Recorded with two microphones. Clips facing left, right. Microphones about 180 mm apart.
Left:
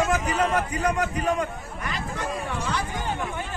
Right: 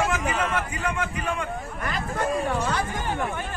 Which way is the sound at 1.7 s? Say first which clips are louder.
Right 3 dB; 50° right (ahead or behind).